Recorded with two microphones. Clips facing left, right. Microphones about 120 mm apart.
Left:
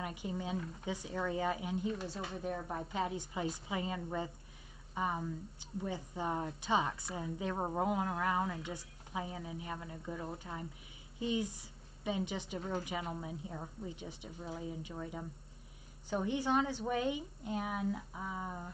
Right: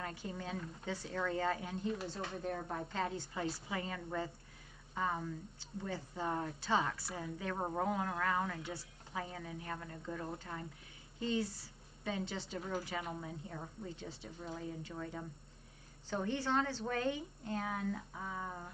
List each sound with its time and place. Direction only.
0.0 s a woman's voice: 15° left (ahead or behind)